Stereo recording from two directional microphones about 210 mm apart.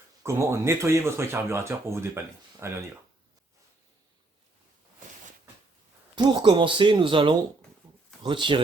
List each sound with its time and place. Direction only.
0.2 s speech: 15° right (ahead or behind)
6.1 s speech: 20° right (ahead or behind)